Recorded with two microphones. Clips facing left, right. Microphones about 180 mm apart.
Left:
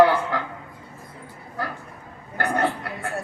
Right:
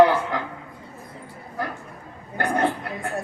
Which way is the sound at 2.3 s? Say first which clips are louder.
Right 1 dB; 10° right (ahead or behind).